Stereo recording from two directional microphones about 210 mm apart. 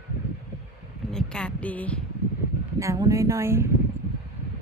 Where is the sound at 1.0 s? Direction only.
5° left (ahead or behind).